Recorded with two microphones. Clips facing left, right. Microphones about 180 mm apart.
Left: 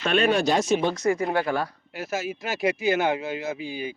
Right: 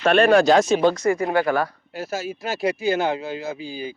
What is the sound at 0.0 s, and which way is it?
Speech, 55° right (ahead or behind).